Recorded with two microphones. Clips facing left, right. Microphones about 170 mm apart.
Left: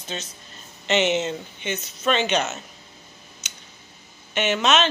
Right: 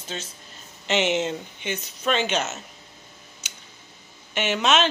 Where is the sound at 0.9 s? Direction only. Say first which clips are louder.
Left 1 dB; 10° right (ahead or behind).